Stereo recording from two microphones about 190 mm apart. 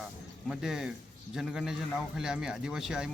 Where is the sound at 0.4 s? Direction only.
5° right (ahead or behind).